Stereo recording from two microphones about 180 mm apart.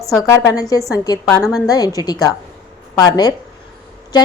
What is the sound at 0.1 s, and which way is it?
A woman's voice, 20° left (ahead or behind).